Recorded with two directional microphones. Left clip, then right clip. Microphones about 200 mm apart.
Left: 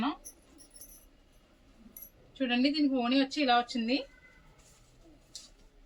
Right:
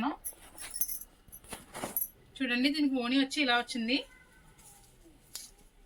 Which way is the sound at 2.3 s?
15° left (ahead or behind).